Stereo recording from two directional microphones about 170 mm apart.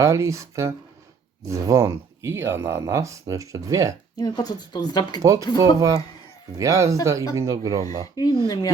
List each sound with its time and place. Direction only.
0.0 s speech: 15° right (ahead or behind)
4.2 s speech: 25° left (ahead or behind)
5.2 s speech: 20° right (ahead or behind)
8.1 s speech: 20° left (ahead or behind)